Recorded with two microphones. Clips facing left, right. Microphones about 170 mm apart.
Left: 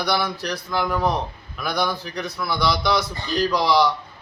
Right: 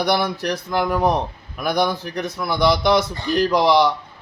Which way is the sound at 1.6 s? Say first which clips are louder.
Right 4 dB; 50° right (ahead or behind).